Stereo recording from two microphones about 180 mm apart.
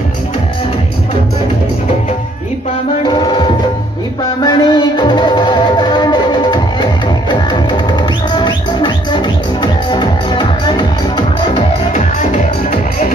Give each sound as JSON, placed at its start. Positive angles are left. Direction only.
{"t": 3.1, "sound": "music", "side_deg": 25}
{"t": 11.9, "sound": "music", "side_deg": 40}